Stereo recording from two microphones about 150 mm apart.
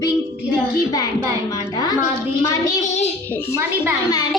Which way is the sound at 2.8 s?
50° left (ahead or behind).